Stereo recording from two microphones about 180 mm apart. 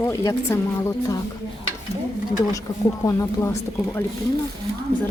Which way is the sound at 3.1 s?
15° left (ahead or behind).